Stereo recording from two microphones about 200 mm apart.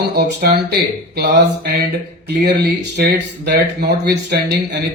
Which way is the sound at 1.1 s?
55° right (ahead or behind).